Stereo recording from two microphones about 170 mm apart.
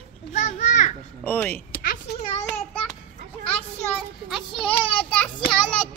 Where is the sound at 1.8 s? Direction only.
60° left (ahead or behind).